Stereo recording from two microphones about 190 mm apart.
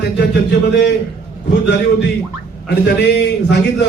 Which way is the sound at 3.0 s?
65° left (ahead or behind).